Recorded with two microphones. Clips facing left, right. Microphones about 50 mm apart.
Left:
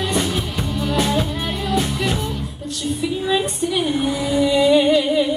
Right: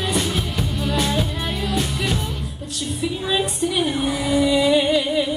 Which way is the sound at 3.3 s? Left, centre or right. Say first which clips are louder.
Left 1 dB; centre.